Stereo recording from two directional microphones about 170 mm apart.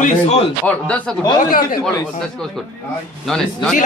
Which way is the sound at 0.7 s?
5° left (ahead or behind).